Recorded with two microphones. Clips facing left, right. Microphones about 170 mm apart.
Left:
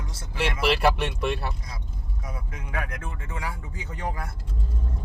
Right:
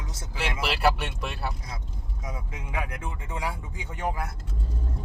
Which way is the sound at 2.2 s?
20° right (ahead or behind).